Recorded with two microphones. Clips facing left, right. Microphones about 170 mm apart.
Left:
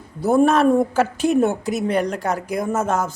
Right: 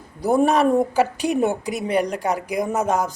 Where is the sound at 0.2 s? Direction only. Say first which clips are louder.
Left 2 dB; 15° right (ahead or behind).